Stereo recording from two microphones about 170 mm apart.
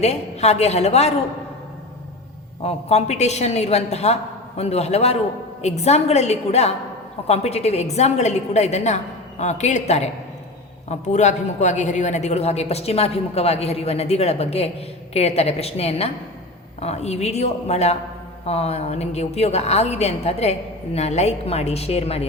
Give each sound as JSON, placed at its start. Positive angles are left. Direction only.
{"t": 0.0, "sound": "a woman's voice", "side_deg": 40}
{"t": 2.6, "sound": "a woman's voice", "side_deg": 40}